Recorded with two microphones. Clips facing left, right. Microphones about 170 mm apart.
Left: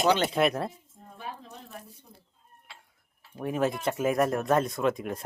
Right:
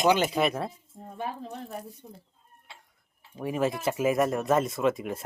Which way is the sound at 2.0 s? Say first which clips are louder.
Right 8 dB; 45° right (ahead or behind).